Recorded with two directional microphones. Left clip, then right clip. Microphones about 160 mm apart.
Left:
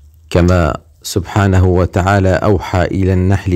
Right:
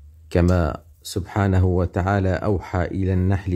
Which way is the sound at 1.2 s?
20° left (ahead or behind).